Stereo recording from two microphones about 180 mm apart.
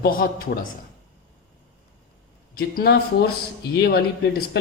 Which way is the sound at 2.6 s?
60° left (ahead or behind).